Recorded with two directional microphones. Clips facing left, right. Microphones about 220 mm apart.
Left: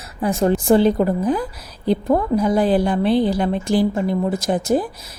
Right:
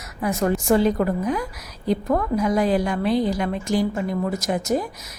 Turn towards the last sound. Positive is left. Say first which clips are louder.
# left 4 dB
turn(degrees=30)  # may be behind; listen again after turning